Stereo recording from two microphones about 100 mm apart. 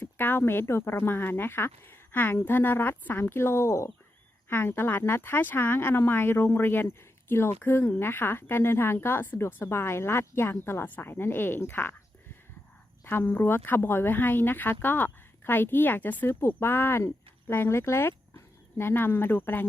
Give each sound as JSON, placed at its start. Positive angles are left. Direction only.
{"t": 0.0, "sound": "speech", "side_deg": 20}
{"t": 13.1, "sound": "speech", "side_deg": 20}